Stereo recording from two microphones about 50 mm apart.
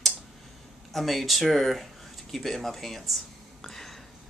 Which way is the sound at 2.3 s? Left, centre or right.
Centre.